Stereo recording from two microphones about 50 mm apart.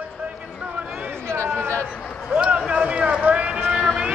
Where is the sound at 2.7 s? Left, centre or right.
Right.